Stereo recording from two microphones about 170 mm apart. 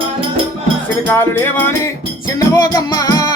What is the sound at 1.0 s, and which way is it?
Music, 15° left (ahead or behind).